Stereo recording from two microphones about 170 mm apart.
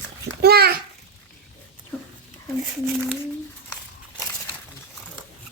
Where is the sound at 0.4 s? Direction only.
70° right (ahead or behind).